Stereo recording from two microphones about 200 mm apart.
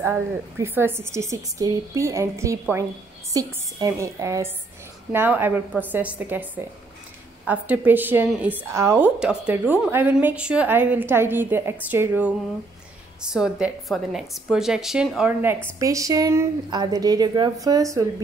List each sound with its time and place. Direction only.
0.0 s a woman's voice: 10° right (ahead or behind)
15.8 s a woman's voice: 15° right (ahead or behind)